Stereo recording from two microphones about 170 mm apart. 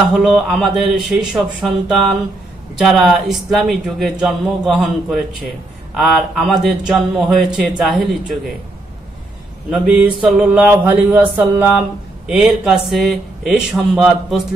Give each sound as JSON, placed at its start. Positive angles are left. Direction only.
{"t": 0.1, "sound": "speech", "side_deg": -5}
{"t": 9.7, "sound": "mantra", "side_deg": -5}
{"t": 12.3, "sound": "speech", "side_deg": 0}